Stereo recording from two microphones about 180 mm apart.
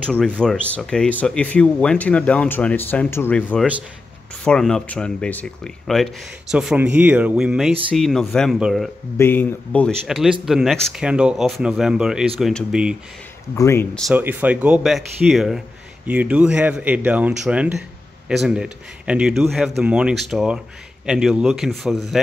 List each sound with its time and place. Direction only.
0.1 s speech: 5° left (ahead or behind)
9.2 s speech: 10° left (ahead or behind)
13.6 s speech: 15° left (ahead or behind)
14.1 s speech: 10° right (ahead or behind)